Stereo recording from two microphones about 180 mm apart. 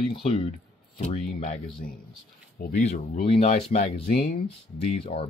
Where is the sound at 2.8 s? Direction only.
35° left (ahead or behind).